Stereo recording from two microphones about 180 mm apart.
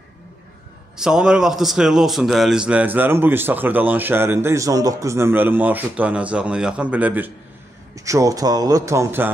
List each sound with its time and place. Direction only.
0.9 s speech: 5° right (ahead or behind)